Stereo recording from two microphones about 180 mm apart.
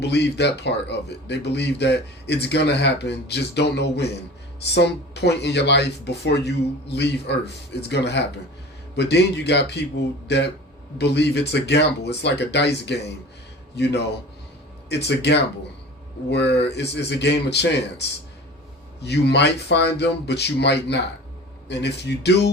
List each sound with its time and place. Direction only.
0.0 s speech: 70° left (ahead or behind)